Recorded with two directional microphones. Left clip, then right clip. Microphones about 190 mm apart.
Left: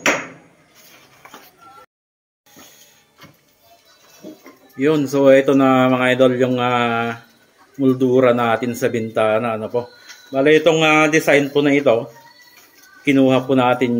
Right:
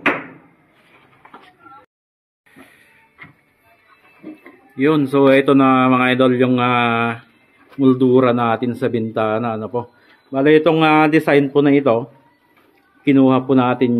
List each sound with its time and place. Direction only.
4.7 s speech: 15° right (ahead or behind)
13.0 s speech: 20° right (ahead or behind)